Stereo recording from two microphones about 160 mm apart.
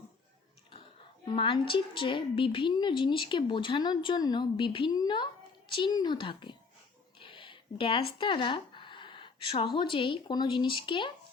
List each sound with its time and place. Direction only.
1.2 s a woman's voice: 30° left (ahead or behind)
7.2 s a sound: 30° left (ahead or behind)
9.9 s a woman's voice: 30° left (ahead or behind)